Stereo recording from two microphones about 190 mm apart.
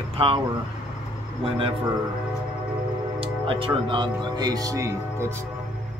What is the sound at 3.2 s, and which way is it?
Speech, 30° right (ahead or behind).